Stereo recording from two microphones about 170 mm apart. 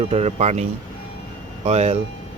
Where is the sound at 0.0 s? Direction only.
35° right (ahead or behind).